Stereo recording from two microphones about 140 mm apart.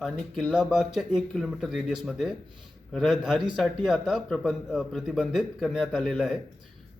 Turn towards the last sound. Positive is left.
turn(degrees=0)  # may be behind; listen again after turning